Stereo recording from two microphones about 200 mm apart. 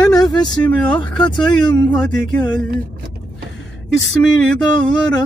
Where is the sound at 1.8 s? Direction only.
5° left (ahead or behind).